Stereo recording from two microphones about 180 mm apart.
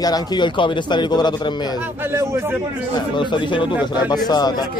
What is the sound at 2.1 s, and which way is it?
Speech, 15° right (ahead or behind).